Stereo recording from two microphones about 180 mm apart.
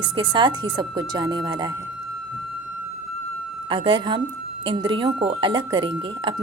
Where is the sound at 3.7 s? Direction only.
25° right (ahead or behind).